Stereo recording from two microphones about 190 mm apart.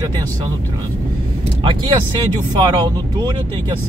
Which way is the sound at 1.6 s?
25° right (ahead or behind).